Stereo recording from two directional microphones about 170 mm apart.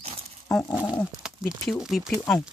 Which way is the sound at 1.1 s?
5° right (ahead or behind).